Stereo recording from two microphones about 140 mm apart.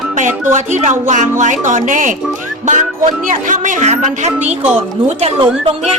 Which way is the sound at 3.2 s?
65° right (ahead or behind).